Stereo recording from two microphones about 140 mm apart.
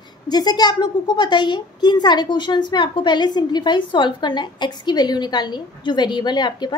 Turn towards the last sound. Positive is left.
turn(degrees=30)  # may be behind; listen again after turning